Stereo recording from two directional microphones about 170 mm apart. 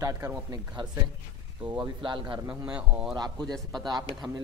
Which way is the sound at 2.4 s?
5° right (ahead or behind).